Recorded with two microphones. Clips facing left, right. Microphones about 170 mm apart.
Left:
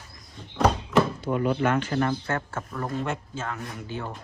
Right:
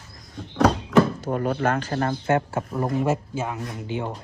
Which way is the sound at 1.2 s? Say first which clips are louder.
Right 1 dB; 45° right (ahead or behind).